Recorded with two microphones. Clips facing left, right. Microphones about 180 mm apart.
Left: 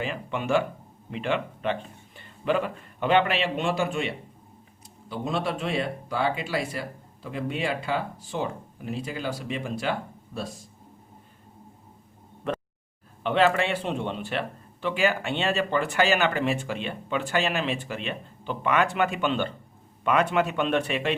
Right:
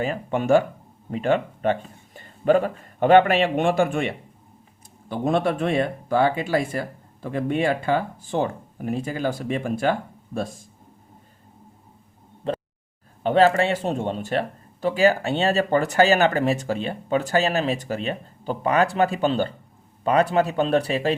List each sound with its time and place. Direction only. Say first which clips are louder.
0.0 s speech: right 6 dB; 45° right (ahead or behind)
13.2 s a man's voice: right 5 dB; 40° right (ahead or behind)